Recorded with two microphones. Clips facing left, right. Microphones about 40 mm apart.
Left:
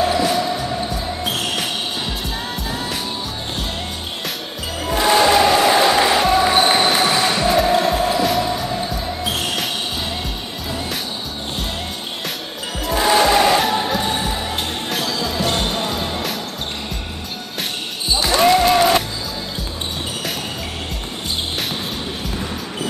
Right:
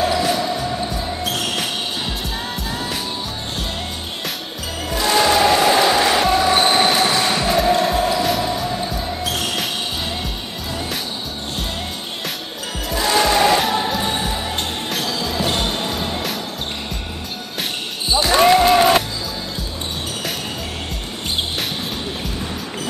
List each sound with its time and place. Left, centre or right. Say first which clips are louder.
0.0 s basketball bounce: left 1 dB; centre
2.7 s music: even; centre
4.9 s music: left 3 dB; centre
5.2 s music: right 1 dB; centre
6.4 s basketball bounce: even; centre
8.2 s music: left 1 dB; centre
9.2 s a sound: left 1 dB; centre
13.0 s music: left 2 dB; centre
14.9 s basketball bounce: left 1 dB; centre
18.3 s basketball bounce: right 1 dB; centre